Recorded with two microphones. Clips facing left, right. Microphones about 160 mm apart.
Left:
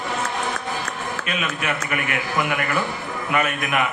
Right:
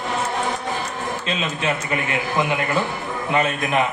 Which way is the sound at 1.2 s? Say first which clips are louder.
Right 1 dB; 25° right (ahead or behind).